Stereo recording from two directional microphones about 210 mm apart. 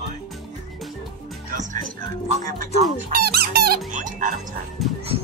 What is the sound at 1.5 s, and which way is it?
Speech, 40° right (ahead or behind).